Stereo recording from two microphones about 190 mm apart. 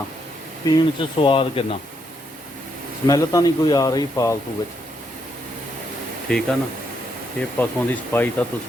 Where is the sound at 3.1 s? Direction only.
20° left (ahead or behind).